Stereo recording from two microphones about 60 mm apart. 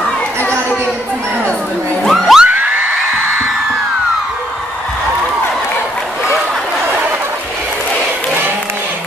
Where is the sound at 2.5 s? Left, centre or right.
Right.